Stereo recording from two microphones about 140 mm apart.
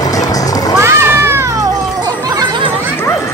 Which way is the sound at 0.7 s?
20° right (ahead or behind).